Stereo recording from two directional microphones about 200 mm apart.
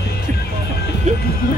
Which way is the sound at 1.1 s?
35° right (ahead or behind).